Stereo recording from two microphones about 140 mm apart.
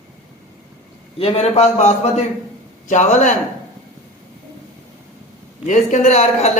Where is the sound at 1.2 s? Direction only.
50° left (ahead or behind).